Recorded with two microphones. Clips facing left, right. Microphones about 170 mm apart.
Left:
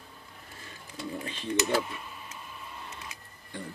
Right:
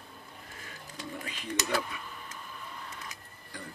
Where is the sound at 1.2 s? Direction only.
30° left (ahead or behind).